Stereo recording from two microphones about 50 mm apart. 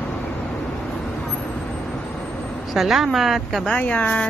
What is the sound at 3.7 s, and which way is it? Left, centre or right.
Speech, left.